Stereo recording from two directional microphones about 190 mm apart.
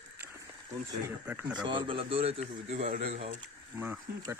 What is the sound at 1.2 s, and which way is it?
Speech, 10° right (ahead or behind).